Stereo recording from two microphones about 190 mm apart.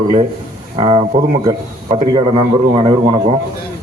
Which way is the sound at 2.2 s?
30° right (ahead or behind).